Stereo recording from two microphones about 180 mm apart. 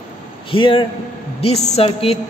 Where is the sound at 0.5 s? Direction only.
30° left (ahead or behind).